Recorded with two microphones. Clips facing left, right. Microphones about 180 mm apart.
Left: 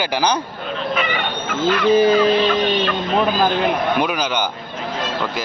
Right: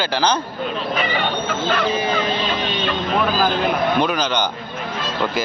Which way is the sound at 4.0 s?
10° left (ahead or behind).